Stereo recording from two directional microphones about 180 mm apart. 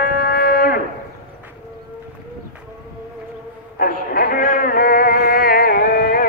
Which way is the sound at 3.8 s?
55° left (ahead or behind).